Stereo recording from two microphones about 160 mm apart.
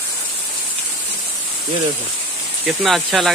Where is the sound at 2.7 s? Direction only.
Centre (ahead or behind).